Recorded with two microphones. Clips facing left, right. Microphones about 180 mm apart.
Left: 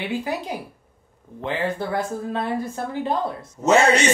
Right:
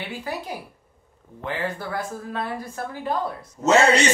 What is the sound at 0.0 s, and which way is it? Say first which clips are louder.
Speech: left 5 dB; 20° left (ahead or behind).